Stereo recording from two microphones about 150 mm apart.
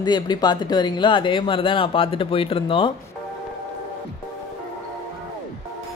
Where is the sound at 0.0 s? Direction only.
30° left (ahead or behind).